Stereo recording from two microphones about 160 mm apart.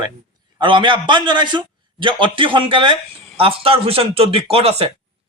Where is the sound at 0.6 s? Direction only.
30° right (ahead or behind).